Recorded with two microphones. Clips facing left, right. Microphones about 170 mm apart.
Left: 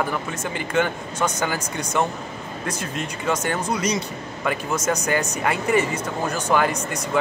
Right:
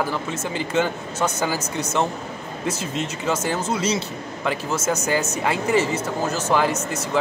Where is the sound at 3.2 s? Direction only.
5° right (ahead or behind).